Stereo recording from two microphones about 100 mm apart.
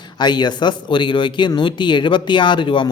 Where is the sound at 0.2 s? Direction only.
45° left (ahead or behind).